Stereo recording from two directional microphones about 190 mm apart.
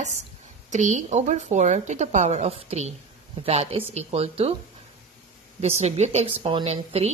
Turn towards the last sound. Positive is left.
turn(degrees=-30)  # may be behind; listen again after turning